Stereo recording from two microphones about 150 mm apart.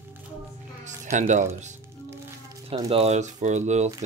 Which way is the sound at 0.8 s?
55° right (ahead or behind).